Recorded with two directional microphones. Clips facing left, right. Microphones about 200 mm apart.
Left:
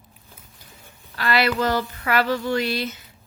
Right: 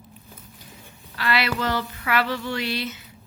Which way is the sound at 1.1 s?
45° left (ahead or behind).